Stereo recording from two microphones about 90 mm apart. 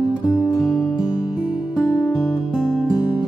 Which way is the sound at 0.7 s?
Centre (ahead or behind).